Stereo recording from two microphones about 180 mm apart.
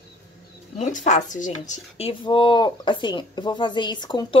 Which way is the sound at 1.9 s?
30° left (ahead or behind).